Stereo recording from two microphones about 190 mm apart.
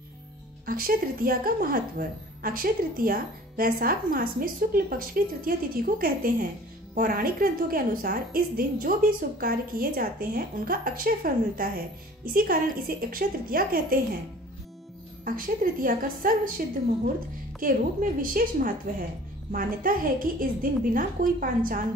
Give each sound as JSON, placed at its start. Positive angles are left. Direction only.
{"t": 0.7, "sound": "a woman's voice", "side_deg": -50}
{"t": 15.2, "sound": "a woman's voice", "side_deg": -45}
{"t": 18.2, "sound": "a woman's voice", "side_deg": -50}